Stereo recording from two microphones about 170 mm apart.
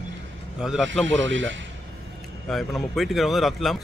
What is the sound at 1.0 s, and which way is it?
Speech, 90° right.